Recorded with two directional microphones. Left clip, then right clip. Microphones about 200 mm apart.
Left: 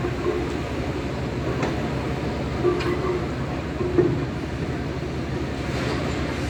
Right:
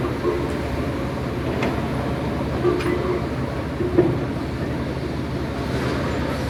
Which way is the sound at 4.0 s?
55° right (ahead or behind).